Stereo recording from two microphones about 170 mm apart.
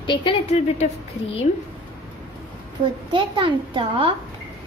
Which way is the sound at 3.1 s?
30° right (ahead or behind).